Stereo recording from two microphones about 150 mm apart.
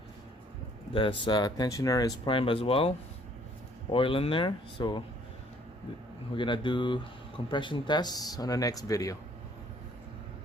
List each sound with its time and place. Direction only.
0.9 s speech: 35° left (ahead or behind)
3.9 s speech: 35° left (ahead or behind)
6.3 s speech: 30° left (ahead or behind)